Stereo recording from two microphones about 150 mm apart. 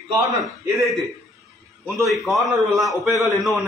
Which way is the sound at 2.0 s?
Centre (ahead or behind).